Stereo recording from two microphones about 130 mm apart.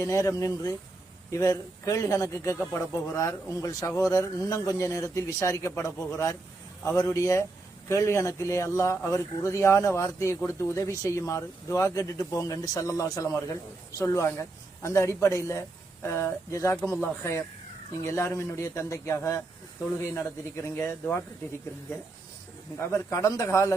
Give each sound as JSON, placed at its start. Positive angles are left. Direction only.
{"t": 0.0, "sound": "speech", "side_deg": 25}
{"t": 23.1, "sound": "speech", "side_deg": 25}